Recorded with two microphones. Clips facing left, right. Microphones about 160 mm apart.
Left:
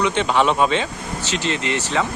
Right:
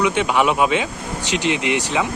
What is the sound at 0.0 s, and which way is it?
Speech, 10° right (ahead or behind).